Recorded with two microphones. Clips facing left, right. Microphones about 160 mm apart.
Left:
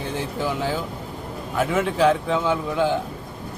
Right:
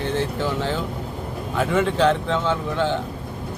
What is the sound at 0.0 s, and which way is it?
A man's voice, 10° left (ahead or behind).